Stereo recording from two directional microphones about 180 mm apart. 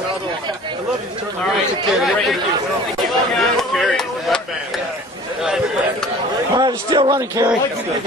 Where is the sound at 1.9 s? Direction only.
Centre (ahead or behind).